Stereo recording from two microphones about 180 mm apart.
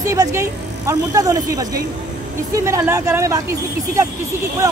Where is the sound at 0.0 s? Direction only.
15° right (ahead or behind).